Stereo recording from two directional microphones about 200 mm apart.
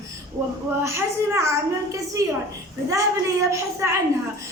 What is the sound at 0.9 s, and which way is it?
A child's voice, 15° right (ahead or behind).